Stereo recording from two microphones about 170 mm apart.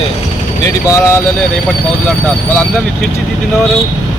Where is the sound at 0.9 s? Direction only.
15° left (ahead or behind).